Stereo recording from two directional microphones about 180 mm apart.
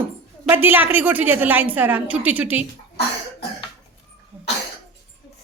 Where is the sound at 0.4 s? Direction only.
10° right (ahead or behind).